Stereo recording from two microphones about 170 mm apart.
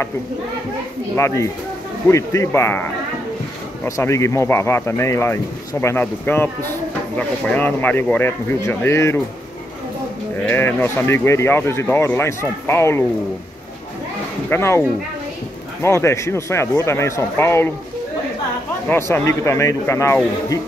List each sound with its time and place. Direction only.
1.1 s speech: 15° left (ahead or behind)
3.8 s speech: 15° left (ahead or behind)
10.4 s speech: 10° left (ahead or behind)
14.5 s speech: 15° left (ahead or behind)
15.8 s speech: 15° left (ahead or behind)
18.9 s speech: 15° left (ahead or behind)